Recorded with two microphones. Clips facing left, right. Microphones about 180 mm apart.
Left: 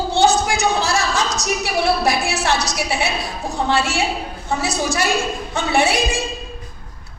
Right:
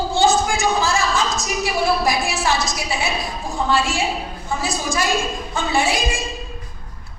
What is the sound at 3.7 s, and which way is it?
A woman's voice, 70° left (ahead or behind).